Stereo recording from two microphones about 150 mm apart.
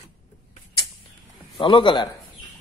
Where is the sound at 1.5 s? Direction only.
35° left (ahead or behind).